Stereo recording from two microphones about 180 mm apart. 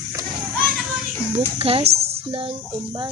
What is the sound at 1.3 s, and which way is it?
Speech, 30° right (ahead or behind).